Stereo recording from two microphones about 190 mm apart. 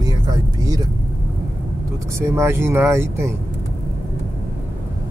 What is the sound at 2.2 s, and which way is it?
Speech, 15° right (ahead or behind).